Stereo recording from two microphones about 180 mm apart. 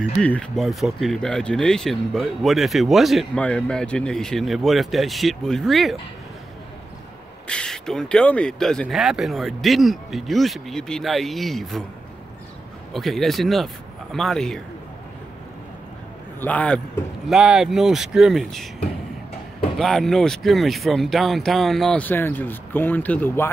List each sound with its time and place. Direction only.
0.2 s speech: 5° left (ahead or behind)
7.4 s speech: 5° left (ahead or behind)
12.9 s speech: centre (ahead or behind)
16.3 s a man's voice: 10° left (ahead or behind)
19.8 s speech: centre (ahead or behind)